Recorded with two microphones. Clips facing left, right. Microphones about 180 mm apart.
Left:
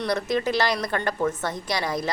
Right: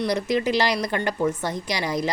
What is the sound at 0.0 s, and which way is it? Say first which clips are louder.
A woman's voice: right 2 dB; 15° right (ahead or behind).